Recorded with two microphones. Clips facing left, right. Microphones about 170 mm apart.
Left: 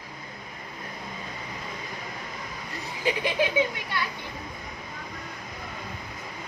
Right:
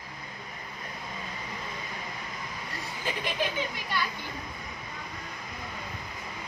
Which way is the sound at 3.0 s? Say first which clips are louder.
Left 6 dB; 75° left (ahead or behind).